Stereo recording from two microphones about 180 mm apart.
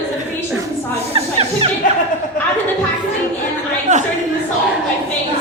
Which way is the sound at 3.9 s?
40° right (ahead or behind).